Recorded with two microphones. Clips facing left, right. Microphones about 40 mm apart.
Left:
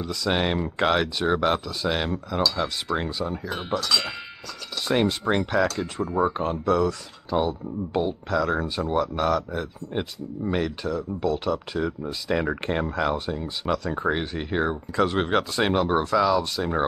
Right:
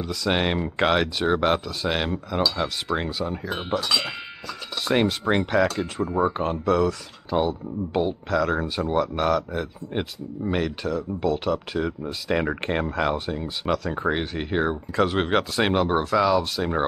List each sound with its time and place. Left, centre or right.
0.0 s speech: centre
4.8 s a sound: centre
5.5 s speech: centre